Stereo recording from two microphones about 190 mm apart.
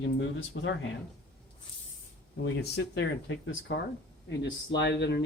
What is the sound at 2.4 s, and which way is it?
Speech, 60° left (ahead or behind).